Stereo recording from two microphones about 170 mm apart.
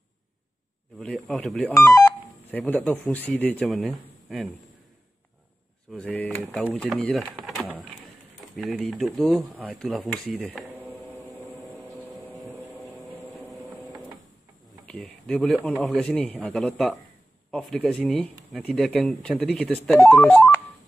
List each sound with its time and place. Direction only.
0.9 s speech: centre (ahead or behind)
1.7 s speech: 20° left (ahead or behind)
2.5 s speech: 5° left (ahead or behind)
5.9 s speech: 5° left (ahead or behind)
7.1 s a sound: centre (ahead or behind)
8.5 s speech: centre (ahead or behind)
11.6 s a sound: centre (ahead or behind)
13.3 s vehicle: centre (ahead or behind)
13.7 s printer: centre (ahead or behind)
14.9 s speech: 5° left (ahead or behind)
20.2 s music: 10° left (ahead or behind)